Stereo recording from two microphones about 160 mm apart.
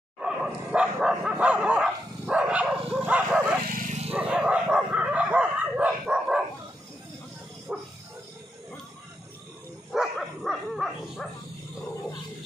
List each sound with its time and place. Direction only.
0.2 s dog: 5° right (ahead or behind)
3.6 s dog: 55° right (ahead or behind)
4.1 s dog: 5° right (ahead or behind)
7.7 s dog: 5° right (ahead or behind)
9.9 s dog: centre (ahead or behind)